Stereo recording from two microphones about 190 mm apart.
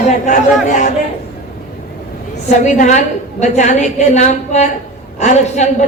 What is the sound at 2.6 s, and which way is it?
A man's voice, 40° left (ahead or behind).